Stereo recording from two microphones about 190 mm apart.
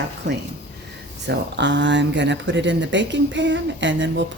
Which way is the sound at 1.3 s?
65° right (ahead or behind).